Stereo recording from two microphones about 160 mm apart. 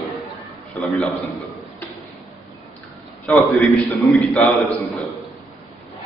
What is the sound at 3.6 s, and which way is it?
A man's voice, centre (ahead or behind).